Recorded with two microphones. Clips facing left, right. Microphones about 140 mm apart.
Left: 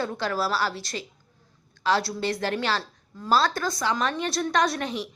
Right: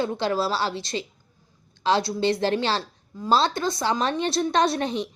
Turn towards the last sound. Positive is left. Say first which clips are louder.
# right 3 dB
turn(degrees=-30)  # may be behind; listen again after turning